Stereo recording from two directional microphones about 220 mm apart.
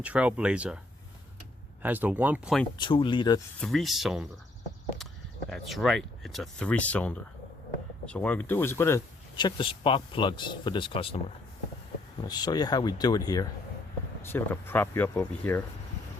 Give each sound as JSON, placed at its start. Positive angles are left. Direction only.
{"t": 0.0, "sound": "speech", "side_deg": -5}
{"t": 1.8, "sound": "speech", "side_deg": -10}
{"t": 2.7, "sound": "speech", "side_deg": 20}
{"t": 3.6, "sound": "speech", "side_deg": 0}
{"t": 5.5, "sound": "speech", "side_deg": 0}
{"t": 12.3, "sound": "speech", "side_deg": 20}